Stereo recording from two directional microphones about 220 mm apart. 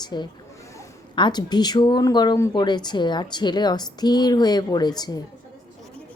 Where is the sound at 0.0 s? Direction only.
20° left (ahead or behind).